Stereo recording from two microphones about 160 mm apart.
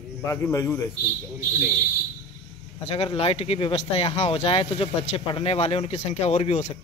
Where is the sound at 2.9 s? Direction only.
40° left (ahead or behind).